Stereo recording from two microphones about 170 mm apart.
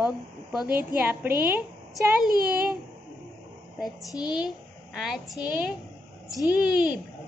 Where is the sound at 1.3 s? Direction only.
60° right (ahead or behind).